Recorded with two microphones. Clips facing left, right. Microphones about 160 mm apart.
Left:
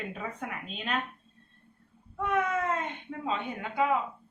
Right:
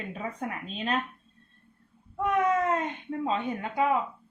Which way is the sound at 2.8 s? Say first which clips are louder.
Right 4 dB; 35° right (ahead or behind).